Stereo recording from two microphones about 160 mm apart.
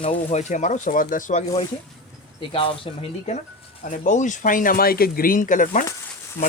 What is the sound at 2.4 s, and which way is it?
Speech, 30° left (ahead or behind).